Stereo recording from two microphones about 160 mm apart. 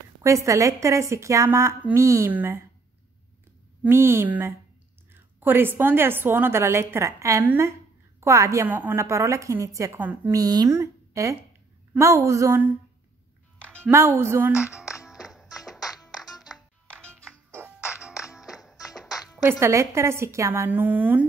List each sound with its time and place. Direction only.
0.2 s a woman's voice: 20° right (ahead or behind)
3.8 s a woman's voice: 15° right (ahead or behind)
10.4 s a woman's voice: 25° right (ahead or behind)
13.6 s music: 5° left (ahead or behind)
13.8 s a woman's voice: 15° right (ahead or behind)
15.0 s music: 5° right (ahead or behind)
16.3 s music: 25° left (ahead or behind)
16.8 s music: 5° left (ahead or behind)
17.8 s music: 5° right (ahead or behind)
19.0 s music: 20° left (ahead or behind)
19.6 s a woman's voice: 20° right (ahead or behind)